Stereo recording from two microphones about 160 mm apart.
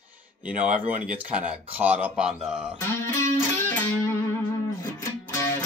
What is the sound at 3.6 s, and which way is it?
Music, 15° left (ahead or behind).